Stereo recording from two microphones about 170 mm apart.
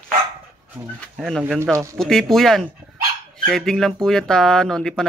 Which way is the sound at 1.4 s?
15° right (ahead or behind).